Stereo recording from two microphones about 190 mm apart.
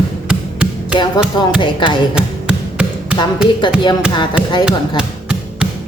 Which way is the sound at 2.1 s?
5° right (ahead or behind).